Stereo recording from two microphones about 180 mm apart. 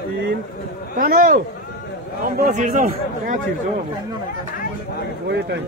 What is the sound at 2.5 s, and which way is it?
Speech, 45° right (ahead or behind).